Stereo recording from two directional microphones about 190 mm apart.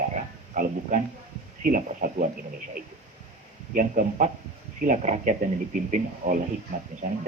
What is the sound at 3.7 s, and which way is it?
Speech, 45° right (ahead or behind).